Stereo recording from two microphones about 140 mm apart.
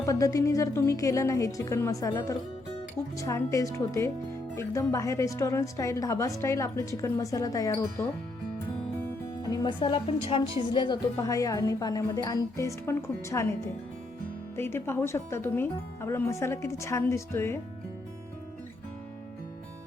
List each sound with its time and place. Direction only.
0.0 s a woman's voice: 25° left (ahead or behind)
9.5 s a woman's voice: 35° left (ahead or behind); by 13.5 s 20° left (ahead or behind)
14.5 s a woman's voice: 15° left (ahead or behind)